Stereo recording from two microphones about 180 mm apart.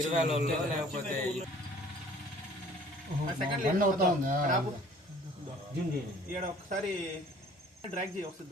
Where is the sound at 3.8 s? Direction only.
50° right (ahead or behind).